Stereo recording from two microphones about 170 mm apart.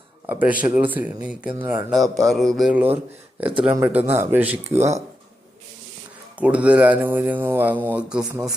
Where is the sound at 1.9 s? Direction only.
Centre (ahead or behind).